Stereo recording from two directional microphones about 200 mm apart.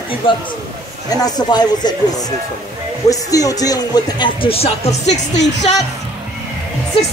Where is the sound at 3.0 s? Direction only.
15° left (ahead or behind); by 5.2 s 35° left (ahead or behind).